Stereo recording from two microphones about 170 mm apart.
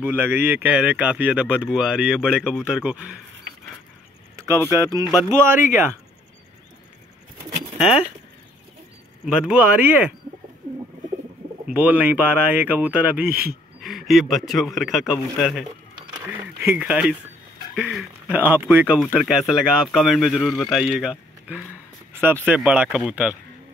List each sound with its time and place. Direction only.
0.0 s speech: 10° right (ahead or behind)
4.6 s speech: 20° right (ahead or behind)
7.7 s a sound: 5° right (ahead or behind)
9.2 s speech: 5° right (ahead or behind)
11.6 s speech: 10° right (ahead or behind)